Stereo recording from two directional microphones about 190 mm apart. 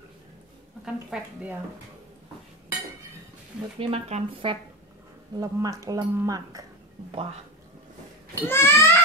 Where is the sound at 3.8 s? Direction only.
30° right (ahead or behind).